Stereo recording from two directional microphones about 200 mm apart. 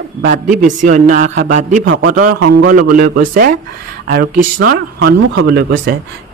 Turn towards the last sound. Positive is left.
turn(degrees=-65)  # may be behind; listen again after turning